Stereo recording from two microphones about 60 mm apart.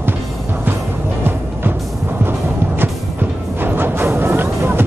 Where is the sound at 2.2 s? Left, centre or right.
Right.